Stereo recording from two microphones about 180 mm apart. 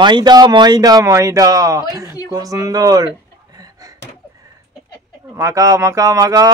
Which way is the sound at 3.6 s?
20° right (ahead or behind).